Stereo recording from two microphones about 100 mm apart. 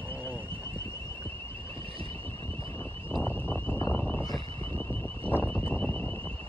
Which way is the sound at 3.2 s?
20° left (ahead or behind).